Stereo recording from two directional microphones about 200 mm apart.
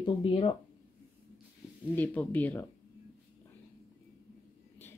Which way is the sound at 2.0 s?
10° left (ahead or behind).